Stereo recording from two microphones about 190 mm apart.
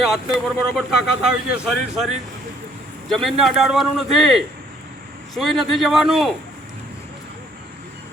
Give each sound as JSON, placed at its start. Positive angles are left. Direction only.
{"t": 0.0, "sound": "a man's voice", "side_deg": 0}
{"t": 3.1, "sound": "a man's voice", "side_deg": 0}